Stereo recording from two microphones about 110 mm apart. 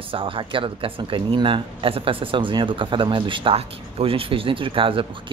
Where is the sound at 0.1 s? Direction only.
55° right (ahead or behind).